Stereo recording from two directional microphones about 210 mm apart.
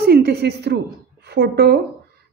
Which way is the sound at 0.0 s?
50° right (ahead or behind).